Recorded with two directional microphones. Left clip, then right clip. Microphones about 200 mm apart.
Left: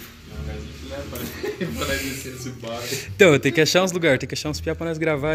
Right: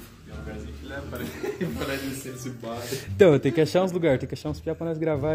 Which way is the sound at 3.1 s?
10° right (ahead or behind).